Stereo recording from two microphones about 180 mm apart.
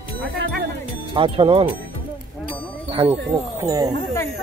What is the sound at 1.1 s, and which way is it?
Speech, 30° right (ahead or behind).